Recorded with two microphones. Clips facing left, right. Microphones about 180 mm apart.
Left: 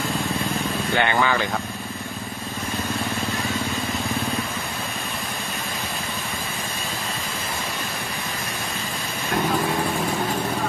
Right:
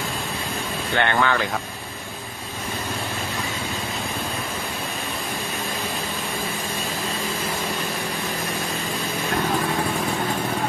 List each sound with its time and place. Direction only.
0.9 s speech: 5° left (ahead or behind)